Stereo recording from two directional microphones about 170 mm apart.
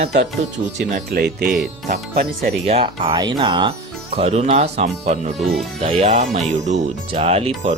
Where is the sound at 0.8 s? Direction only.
50° right (ahead or behind).